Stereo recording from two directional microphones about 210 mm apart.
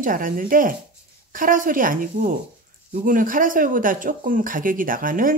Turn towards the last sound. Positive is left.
turn(degrees=-40)  # may be behind; listen again after turning